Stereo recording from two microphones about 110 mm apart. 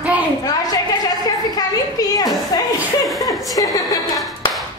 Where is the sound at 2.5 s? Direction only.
30° left (ahead or behind).